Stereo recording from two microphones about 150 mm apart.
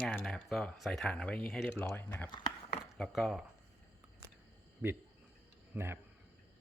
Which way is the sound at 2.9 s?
5° left (ahead or behind).